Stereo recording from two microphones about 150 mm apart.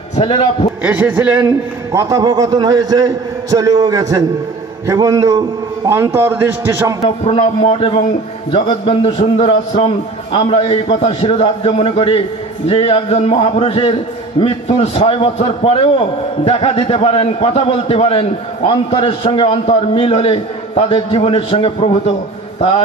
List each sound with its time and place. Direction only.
0.1 s a man's voice: 40° left (ahead or behind)
0.8 s a man's voice: 10° right (ahead or behind)
1.4 s a man's voice: 20° right (ahead or behind)
7.2 s a man's voice: 40° left (ahead or behind)